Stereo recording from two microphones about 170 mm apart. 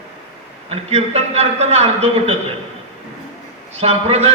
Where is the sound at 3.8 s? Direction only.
35° right (ahead or behind).